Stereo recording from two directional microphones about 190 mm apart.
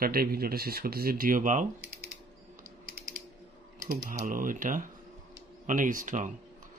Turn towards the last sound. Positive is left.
turn(degrees=-40)  # may be behind; listen again after turning